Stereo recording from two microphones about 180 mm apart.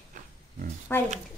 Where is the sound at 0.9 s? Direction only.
10° left (ahead or behind).